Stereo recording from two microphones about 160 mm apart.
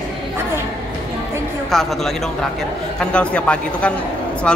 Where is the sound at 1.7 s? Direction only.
Centre (ahead or behind).